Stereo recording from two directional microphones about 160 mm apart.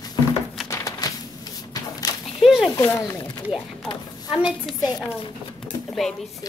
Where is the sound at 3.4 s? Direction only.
5° right (ahead or behind).